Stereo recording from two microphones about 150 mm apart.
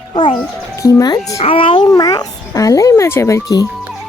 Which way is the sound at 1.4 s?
40° left (ahead or behind).